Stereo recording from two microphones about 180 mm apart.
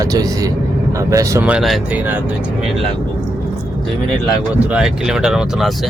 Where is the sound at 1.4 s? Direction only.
5° right (ahead or behind).